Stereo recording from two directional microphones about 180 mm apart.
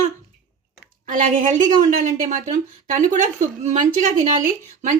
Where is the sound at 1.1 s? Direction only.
45° right (ahead or behind).